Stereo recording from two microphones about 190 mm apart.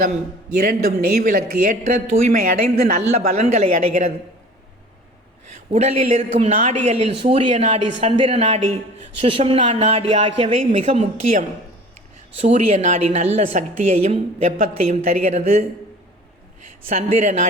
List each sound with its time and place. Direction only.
0.5 s speech: 55° right (ahead or behind)
5.7 s a woman's voice: 35° right (ahead or behind)
16.9 s a woman's voice: 40° right (ahead or behind)